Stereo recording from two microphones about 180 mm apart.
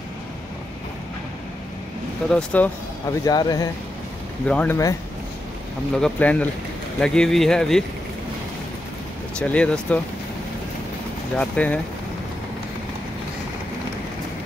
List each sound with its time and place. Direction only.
2.3 s speech: 5° left (ahead or behind)
3.3 s speech: 20° left (ahead or behind)
4.5 s speech: 10° left (ahead or behind)
5.9 s speech: 5° left (ahead or behind)
9.4 s speech: 5° left (ahead or behind)
11.3 s speech: 10° left (ahead or behind)